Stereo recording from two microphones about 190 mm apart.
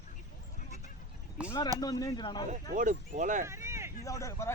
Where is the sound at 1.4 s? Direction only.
15° left (ahead or behind).